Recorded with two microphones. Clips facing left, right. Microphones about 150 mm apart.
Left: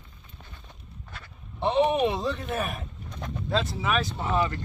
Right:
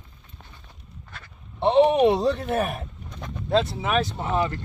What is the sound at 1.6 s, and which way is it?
A man's voice, 75° right (ahead or behind).